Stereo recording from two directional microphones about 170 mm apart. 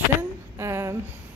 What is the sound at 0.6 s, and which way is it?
Speech, 15° right (ahead or behind).